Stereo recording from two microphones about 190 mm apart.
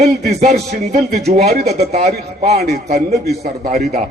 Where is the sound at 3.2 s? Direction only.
55° right (ahead or behind).